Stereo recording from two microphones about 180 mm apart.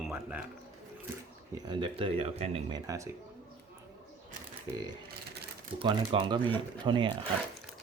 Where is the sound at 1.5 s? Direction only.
25° right (ahead or behind).